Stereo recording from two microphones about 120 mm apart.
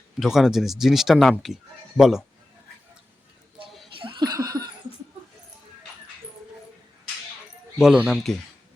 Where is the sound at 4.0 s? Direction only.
40° right (ahead or behind).